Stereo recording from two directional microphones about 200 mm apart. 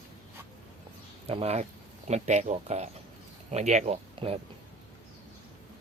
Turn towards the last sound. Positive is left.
turn(degrees=-30)  # may be behind; listen again after turning